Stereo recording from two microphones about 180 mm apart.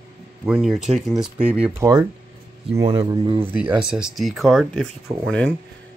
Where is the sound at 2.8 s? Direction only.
30° right (ahead or behind).